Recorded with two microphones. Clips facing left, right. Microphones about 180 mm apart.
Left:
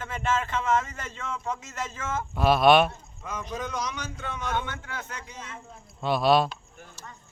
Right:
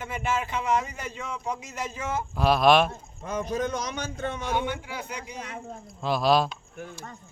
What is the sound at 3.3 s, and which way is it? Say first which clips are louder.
A man's voice: right 6 dB; 45° right (ahead or behind).